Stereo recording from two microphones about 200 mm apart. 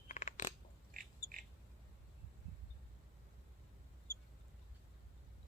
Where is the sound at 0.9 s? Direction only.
40° right (ahead or behind).